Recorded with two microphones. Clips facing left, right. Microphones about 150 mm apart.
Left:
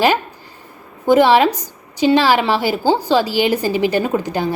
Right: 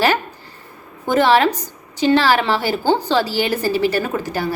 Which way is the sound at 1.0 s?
15° left (ahead or behind).